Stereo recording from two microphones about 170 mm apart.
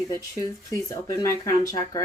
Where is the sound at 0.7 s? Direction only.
20° left (ahead or behind).